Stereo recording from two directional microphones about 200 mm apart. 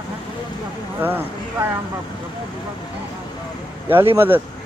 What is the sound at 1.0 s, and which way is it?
Speech, 10° right (ahead or behind).